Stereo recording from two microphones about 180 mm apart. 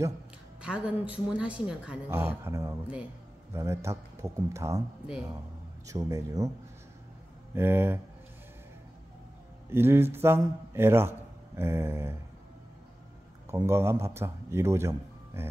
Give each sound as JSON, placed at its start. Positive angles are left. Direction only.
{"t": 0.6, "sound": "speech", "side_deg": -5}
{"t": 5.9, "sound": "speech", "side_deg": -20}
{"t": 7.5, "sound": "speech", "side_deg": -10}
{"t": 9.7, "sound": "speech", "side_deg": -15}
{"t": 13.5, "sound": "a man's voice", "side_deg": -15}